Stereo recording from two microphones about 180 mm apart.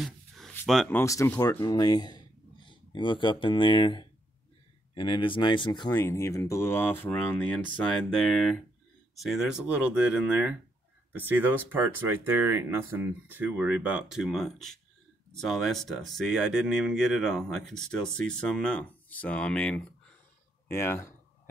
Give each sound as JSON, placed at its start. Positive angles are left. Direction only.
{"t": 0.0, "sound": "speech", "side_deg": 0}
{"t": 5.9, "sound": "speech", "side_deg": 15}